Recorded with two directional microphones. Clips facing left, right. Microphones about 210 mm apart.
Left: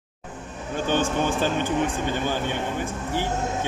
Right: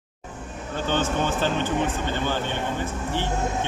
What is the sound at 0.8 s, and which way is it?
Speech, 15° left (ahead or behind).